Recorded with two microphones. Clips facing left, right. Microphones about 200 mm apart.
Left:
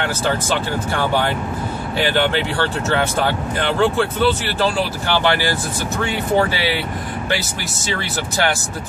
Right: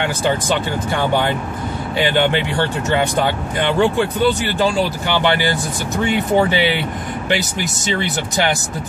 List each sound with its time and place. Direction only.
0.9 s speech: 15° right (ahead or behind)
7.9 s speech: 20° right (ahead or behind)